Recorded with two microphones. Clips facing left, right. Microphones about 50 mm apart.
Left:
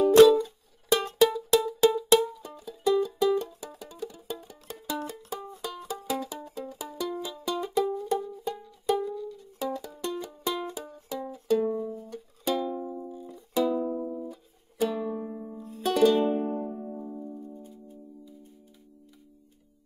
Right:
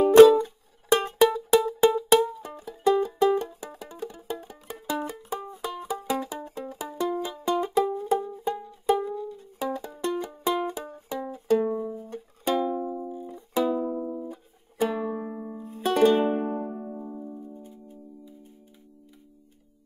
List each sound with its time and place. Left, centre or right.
0.0 s music: right
2.4 s music: right
11.6 s music: centre
14.2 s music: right